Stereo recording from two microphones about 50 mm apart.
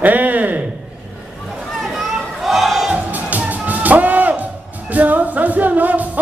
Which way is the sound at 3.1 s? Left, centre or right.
Right.